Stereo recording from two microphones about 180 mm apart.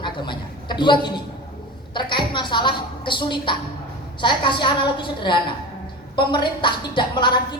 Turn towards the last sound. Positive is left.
turn(degrees=25)  # may be behind; listen again after turning